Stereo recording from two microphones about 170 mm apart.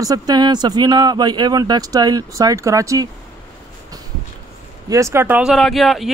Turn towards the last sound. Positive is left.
turn(degrees=0)  # may be behind; listen again after turning